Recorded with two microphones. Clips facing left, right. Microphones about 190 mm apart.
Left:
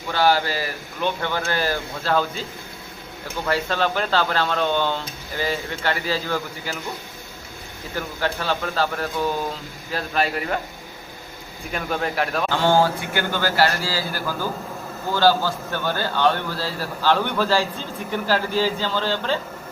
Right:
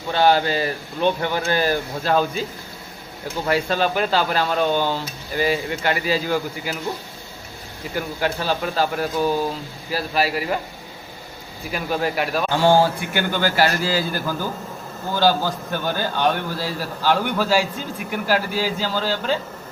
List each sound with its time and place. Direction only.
0.1 s a man's voice: 20° right (ahead or behind)
3.4 s a man's voice: 15° right (ahead or behind)
7.9 s a man's voice: 10° right (ahead or behind)
11.7 s a man's voice: 5° right (ahead or behind)
12.5 s a man's voice: 15° right (ahead or behind)